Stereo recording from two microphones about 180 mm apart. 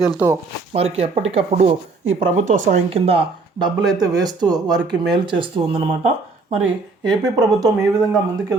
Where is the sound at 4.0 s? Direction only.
20° right (ahead or behind).